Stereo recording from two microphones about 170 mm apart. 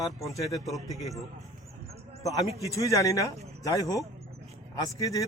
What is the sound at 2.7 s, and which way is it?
Speech, 20° left (ahead or behind).